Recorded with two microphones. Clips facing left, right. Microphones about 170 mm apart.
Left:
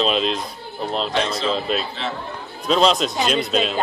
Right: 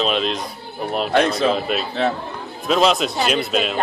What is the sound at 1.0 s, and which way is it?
Speech, 55° right (ahead or behind).